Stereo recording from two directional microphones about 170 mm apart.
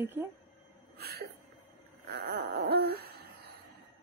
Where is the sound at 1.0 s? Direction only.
65° right (ahead or behind).